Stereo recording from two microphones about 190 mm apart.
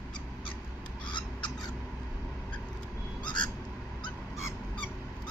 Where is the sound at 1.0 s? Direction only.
25° left (ahead or behind).